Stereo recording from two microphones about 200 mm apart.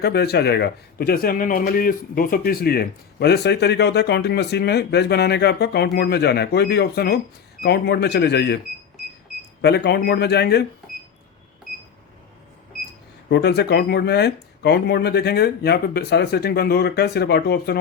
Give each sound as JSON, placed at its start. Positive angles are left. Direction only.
{"t": 0.0, "sound": "a man's voice", "side_deg": 55}
{"t": 9.6, "sound": "a man's voice", "side_deg": 55}
{"t": 13.3, "sound": "a man's voice", "side_deg": 55}